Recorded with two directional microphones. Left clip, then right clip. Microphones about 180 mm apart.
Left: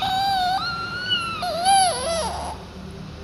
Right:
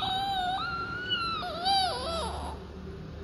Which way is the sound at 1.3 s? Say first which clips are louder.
Left 11 dB; 20° left (ahead or behind).